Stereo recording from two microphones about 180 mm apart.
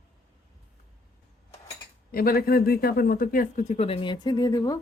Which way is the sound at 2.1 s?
55° left (ahead or behind).